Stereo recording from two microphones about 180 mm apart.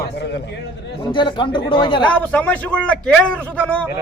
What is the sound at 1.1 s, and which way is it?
Speech, 25° left (ahead or behind).